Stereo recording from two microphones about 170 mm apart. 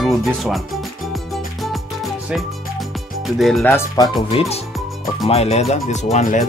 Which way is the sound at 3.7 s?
25° left (ahead or behind).